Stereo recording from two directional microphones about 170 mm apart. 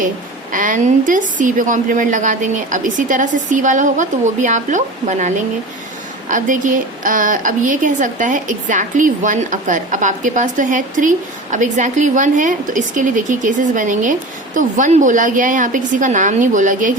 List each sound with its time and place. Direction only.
0.5 s speech: 50° right (ahead or behind)
6.3 s speech: 50° right (ahead or behind)